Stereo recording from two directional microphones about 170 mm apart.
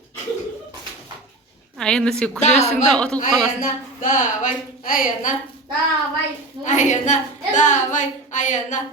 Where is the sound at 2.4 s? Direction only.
40° left (ahead or behind).